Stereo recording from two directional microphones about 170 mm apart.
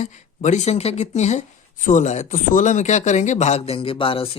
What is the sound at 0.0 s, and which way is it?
Speech, 45° left (ahead or behind).